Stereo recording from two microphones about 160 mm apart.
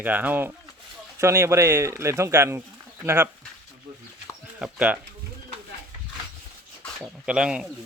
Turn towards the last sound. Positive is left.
turn(degrees=-5)  # may be behind; listen again after turning